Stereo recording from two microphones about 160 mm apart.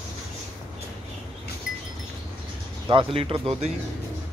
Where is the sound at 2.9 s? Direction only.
35° right (ahead or behind).